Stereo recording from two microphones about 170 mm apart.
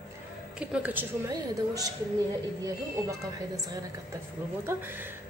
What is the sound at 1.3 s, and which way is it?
Speech, 20° right (ahead or behind).